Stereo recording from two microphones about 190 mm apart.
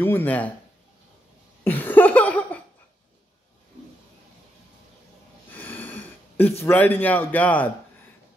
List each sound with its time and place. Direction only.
0.0 s a man's voice: 10° left (ahead or behind)
1.6 s laughter: 10° left (ahead or behind)
5.5 s a sound: 10° left (ahead or behind)
6.6 s a man's voice: 10° left (ahead or behind)